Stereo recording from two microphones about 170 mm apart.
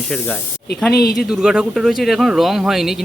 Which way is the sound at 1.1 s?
5° right (ahead or behind).